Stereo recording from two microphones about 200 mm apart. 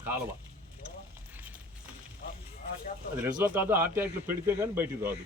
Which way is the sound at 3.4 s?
10° right (ahead or behind).